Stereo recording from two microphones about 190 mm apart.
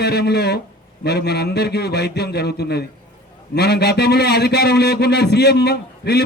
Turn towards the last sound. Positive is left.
turn(degrees=60)  # may be behind; listen again after turning